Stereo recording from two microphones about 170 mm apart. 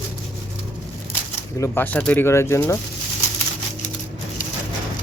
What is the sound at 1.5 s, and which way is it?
Speech, 15° left (ahead or behind).